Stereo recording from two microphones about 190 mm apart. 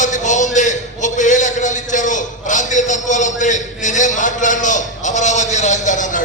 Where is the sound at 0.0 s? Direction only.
40° left (ahead or behind).